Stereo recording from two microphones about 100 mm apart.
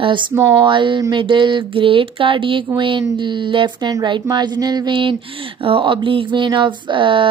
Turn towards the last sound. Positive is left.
turn(degrees=-55)  # may be behind; listen again after turning